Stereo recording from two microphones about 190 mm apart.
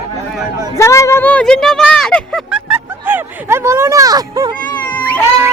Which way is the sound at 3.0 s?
10° right (ahead or behind).